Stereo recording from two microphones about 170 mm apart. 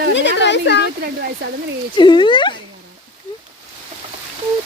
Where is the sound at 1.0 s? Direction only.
65° right (ahead or behind).